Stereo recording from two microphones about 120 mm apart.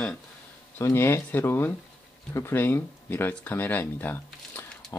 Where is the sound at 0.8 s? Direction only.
20° left (ahead or behind).